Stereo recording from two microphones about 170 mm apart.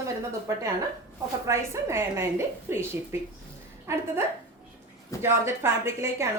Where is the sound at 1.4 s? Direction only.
15° right (ahead or behind).